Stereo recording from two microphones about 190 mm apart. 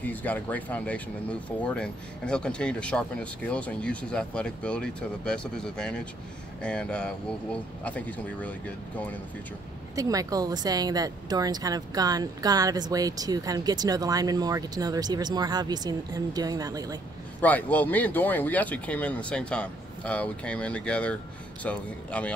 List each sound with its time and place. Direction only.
0.0 s speech: 10° left (ahead or behind)
9.9 s speech: 20° right (ahead or behind)
17.4 s speech: 10° left (ahead or behind)